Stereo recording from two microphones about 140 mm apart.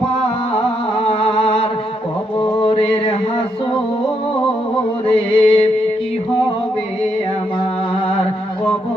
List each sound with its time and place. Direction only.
1.0 s music: 40° left (ahead or behind)
2.4 s mantra: 40° left (ahead or behind)
5.1 s mantra: 40° left (ahead or behind)